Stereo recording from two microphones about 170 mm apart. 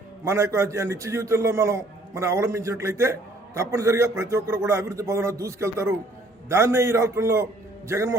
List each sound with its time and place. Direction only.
0.3 s a man's voice: 15° right (ahead or behind)